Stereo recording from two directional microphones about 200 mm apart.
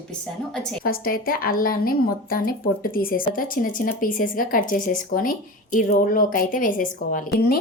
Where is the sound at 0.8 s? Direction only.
45° left (ahead or behind).